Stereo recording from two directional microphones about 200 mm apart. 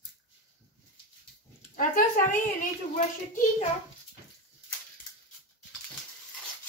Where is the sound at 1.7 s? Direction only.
40° left (ahead or behind).